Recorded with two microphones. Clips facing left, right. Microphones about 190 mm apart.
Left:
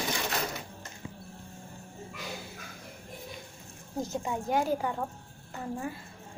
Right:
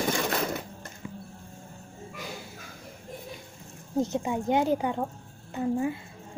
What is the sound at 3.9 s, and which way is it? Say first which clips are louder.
Speech: right 6 dB; 20° right (ahead or behind).